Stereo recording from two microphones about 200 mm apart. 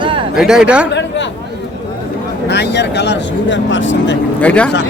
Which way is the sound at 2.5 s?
60° left (ahead or behind).